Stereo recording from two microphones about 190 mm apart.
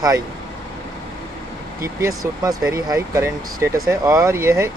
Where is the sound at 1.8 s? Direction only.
15° right (ahead or behind).